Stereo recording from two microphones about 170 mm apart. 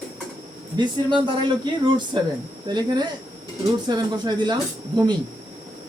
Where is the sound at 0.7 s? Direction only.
25° right (ahead or behind).